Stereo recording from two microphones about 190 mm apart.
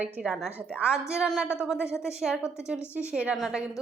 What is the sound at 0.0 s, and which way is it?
A woman's voice, 5° right (ahead or behind).